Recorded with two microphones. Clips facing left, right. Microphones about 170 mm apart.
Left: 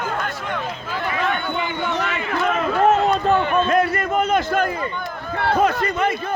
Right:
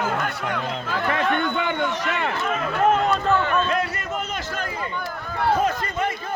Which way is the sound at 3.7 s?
55° left (ahead or behind).